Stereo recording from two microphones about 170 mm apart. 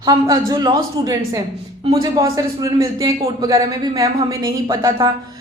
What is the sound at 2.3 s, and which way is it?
A woman's voice, 20° right (ahead or behind).